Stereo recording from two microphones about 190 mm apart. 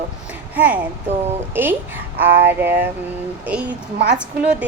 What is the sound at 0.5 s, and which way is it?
A child's voice, 10° right (ahead or behind).